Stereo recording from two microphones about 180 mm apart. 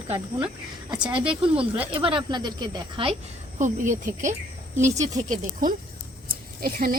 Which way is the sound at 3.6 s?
45° right (ahead or behind).